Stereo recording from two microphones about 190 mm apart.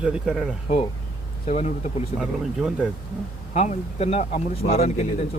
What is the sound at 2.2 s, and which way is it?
Speech, 5° right (ahead or behind).